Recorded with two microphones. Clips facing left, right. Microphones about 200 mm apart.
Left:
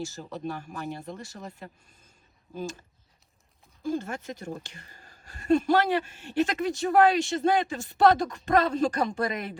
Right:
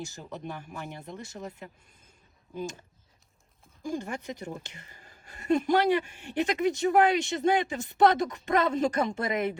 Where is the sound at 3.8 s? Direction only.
15° right (ahead or behind).